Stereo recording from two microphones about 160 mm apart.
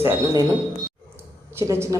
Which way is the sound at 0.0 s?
15° right (ahead or behind).